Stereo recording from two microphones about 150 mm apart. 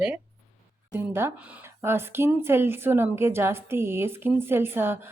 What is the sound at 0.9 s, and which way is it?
A woman's voice, 15° right (ahead or behind).